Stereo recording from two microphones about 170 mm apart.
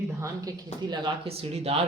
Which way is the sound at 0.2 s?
25° right (ahead or behind).